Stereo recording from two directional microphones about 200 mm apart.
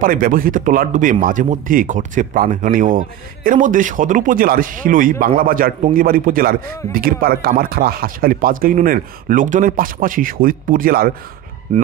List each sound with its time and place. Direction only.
0.0 s a man's voice: 45° right (ahead or behind)